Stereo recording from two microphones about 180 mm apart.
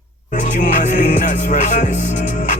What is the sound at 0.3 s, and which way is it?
Music, 45° left (ahead or behind).